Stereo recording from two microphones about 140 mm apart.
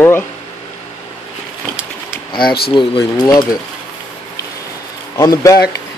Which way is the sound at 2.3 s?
90° left.